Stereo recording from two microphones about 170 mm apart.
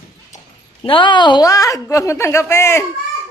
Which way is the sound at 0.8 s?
30° left (ahead or behind).